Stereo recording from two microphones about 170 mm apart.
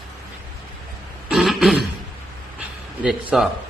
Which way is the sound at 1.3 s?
Centre (ahead or behind).